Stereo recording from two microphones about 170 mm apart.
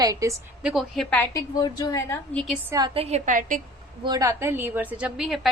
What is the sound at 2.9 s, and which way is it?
Speech, 40° right (ahead or behind).